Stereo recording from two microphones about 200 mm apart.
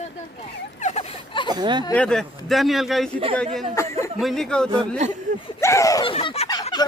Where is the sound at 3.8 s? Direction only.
15° left (ahead or behind).